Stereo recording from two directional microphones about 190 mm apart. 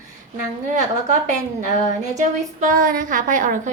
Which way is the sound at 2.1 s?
45° right (ahead or behind).